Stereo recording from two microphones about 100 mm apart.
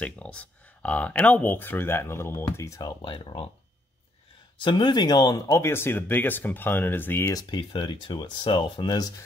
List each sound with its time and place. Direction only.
0.0 s speech: 10° left (ahead or behind); by 3.0 s 35° left (ahead or behind)
3.0 s speech: 55° left (ahead or behind)
4.6 s speech: 50° left (ahead or behind)
5.6 s speech: 25° left (ahead or behind)
7.3 s speech: 45° left (ahead or behind)